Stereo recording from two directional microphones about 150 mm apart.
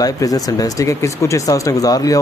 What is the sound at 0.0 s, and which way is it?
Speech, 25° left (ahead or behind).